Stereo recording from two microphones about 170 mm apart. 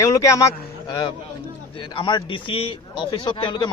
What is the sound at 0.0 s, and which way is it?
A man's voice, 20° left (ahead or behind).